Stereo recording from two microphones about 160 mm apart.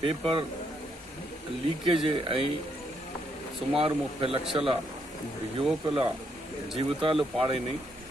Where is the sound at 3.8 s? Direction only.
35° right (ahead or behind).